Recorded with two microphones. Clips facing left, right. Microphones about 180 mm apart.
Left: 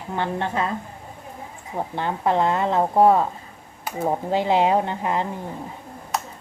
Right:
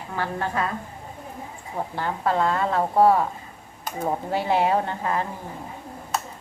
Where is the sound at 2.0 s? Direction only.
20° left (ahead or behind).